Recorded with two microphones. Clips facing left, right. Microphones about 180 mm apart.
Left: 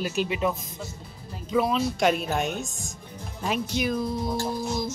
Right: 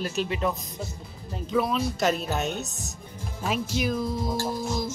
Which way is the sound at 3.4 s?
5° right (ahead or behind).